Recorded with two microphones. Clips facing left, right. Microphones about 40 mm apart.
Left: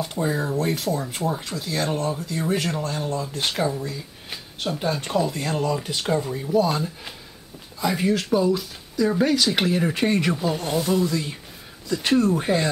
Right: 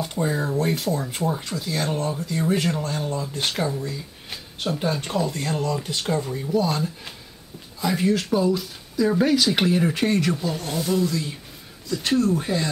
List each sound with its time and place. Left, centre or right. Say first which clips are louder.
0.0 s speech: even; centre; by 12.6 s left